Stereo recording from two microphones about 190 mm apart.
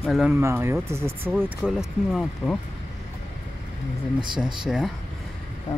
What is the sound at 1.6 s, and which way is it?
Speech, centre (ahead or behind).